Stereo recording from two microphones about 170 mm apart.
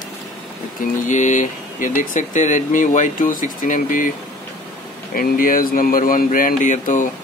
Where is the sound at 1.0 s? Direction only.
45° left (ahead or behind).